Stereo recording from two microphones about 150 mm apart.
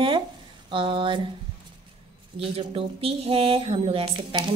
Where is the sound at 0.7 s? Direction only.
35° right (ahead or behind).